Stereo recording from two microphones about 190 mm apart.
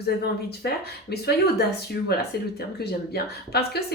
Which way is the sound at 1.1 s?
55° left (ahead or behind).